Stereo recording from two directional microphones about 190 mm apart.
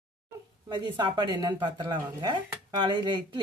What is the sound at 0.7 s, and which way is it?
A woman's voice, 25° right (ahead or behind).